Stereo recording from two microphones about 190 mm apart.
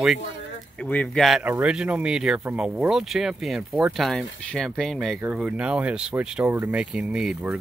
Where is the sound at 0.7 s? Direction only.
5° left (ahead or behind).